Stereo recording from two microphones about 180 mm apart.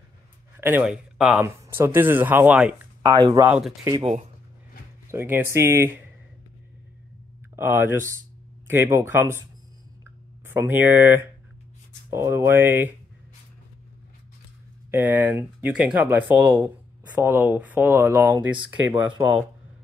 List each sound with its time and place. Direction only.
0.6 s speech: 10° right (ahead or behind)
3.0 s speech: 25° right (ahead or behind)
3.4 s speech: 10° right (ahead or behind)
3.9 s speech: 35° right (ahead or behind)
5.0 s speech: 15° right (ahead or behind)
7.5 s speech: 15° right (ahead or behind)
10.4 s speech: 10° right (ahead or behind)
14.9 s speech: 10° right (ahead or behind)